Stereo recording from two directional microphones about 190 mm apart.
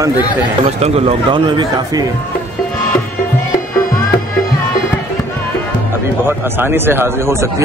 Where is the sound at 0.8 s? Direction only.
30° right (ahead or behind).